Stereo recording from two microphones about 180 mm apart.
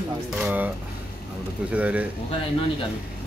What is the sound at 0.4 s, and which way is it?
Speech, 10° right (ahead or behind).